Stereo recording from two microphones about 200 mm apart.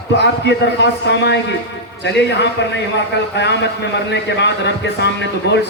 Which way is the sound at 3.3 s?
60° left (ahead or behind).